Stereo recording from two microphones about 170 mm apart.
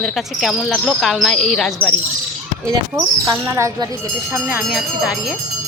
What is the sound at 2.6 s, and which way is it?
Speech, 20° right (ahead or behind).